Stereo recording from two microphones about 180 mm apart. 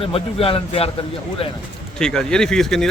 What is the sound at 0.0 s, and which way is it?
Speech, 30° left (ahead or behind).